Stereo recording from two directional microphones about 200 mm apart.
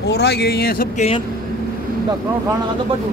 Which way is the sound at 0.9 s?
30° left (ahead or behind).